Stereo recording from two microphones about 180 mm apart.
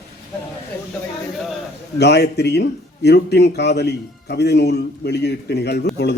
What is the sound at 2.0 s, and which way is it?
Speech, 70° left (ahead or behind).